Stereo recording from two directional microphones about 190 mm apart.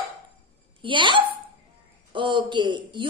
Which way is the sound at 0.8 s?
25° right (ahead or behind).